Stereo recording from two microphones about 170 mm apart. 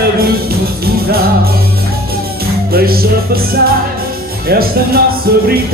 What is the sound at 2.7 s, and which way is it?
Music, 60° right (ahead or behind).